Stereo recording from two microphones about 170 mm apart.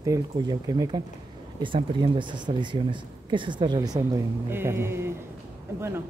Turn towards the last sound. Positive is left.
turn(degrees=-15)  # may be behind; listen again after turning